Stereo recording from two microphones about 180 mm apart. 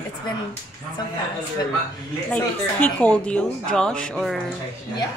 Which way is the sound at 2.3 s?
5° left (ahead or behind).